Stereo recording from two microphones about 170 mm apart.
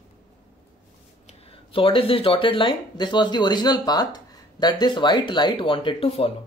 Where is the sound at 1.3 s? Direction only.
35° left (ahead or behind).